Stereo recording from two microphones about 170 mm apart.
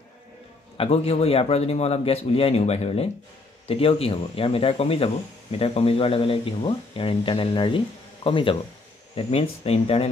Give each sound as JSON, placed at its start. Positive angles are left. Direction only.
{"t": 0.7, "sound": "speech", "side_deg": 35}